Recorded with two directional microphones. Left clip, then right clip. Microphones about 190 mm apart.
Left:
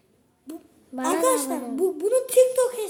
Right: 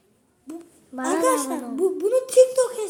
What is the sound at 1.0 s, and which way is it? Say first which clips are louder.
A child's voice: right 1 dB; 20° left (ahead or behind).